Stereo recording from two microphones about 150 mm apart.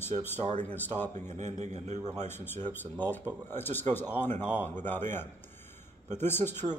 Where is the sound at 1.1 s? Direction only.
50° right (ahead or behind).